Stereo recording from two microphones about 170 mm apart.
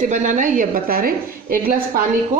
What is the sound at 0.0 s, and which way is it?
A woman's voice, 50° right (ahead or behind).